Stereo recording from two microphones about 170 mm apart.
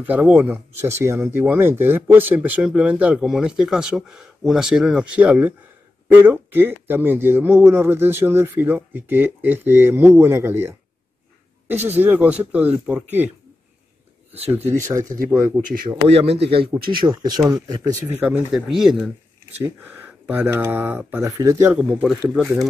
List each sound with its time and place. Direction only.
0.0 s speech: 10° right (ahead or behind)
14.7 s speech: 15° right (ahead or behind)
16.1 s speech: 35° right (ahead or behind)
16.7 s speech: 15° right (ahead or behind)
21.7 s speech: 5° right (ahead or behind)